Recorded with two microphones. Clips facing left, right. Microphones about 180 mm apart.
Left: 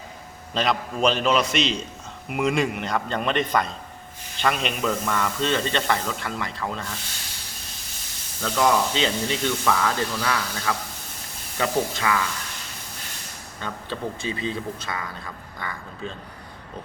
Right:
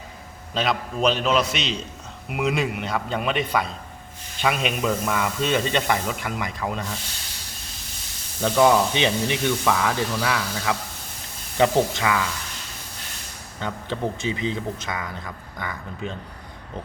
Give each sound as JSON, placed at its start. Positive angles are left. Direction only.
{"t": 0.5, "sound": "a man's voice", "side_deg": 0}
{"t": 8.4, "sound": "a man's voice", "side_deg": -15}
{"t": 13.6, "sound": "speech", "side_deg": -15}